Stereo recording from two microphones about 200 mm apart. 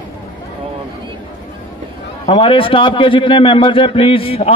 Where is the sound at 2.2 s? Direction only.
25° left (ahead or behind).